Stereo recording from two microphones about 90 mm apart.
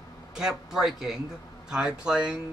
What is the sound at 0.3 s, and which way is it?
Speech, 5° right (ahead or behind).